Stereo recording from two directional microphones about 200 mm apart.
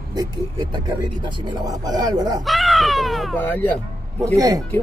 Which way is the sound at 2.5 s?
Centre (ahead or behind).